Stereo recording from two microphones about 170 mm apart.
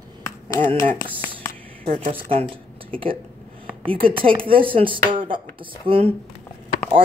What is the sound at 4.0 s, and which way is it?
Speech, 30° right (ahead or behind).